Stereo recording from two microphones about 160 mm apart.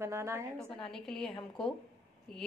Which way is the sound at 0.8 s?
5° left (ahead or behind).